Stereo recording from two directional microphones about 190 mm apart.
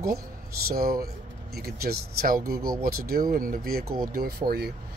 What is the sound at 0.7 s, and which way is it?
Speech, 55° right (ahead or behind).